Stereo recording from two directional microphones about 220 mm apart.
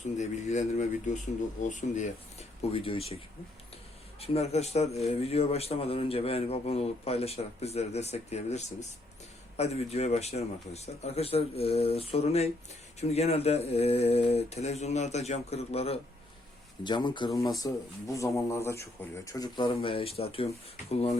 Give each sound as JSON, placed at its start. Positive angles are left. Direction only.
{"t": 0.0, "sound": "a man's voice", "side_deg": 30}
{"t": 4.2, "sound": "a man's voice", "side_deg": 30}